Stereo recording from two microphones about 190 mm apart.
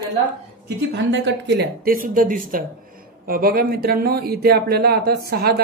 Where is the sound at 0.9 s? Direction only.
65° right (ahead or behind).